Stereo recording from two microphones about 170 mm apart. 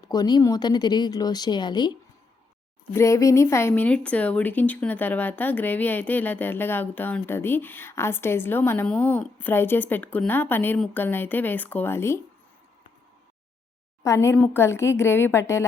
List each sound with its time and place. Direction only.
0.1 s speech: 25° left (ahead or behind)
14.0 s speech: 15° left (ahead or behind)